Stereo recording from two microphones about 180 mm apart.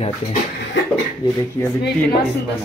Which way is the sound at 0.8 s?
90° left.